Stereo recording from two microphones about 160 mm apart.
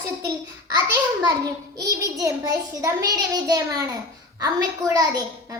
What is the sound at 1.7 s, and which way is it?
A child's voice, 20° right (ahead or behind).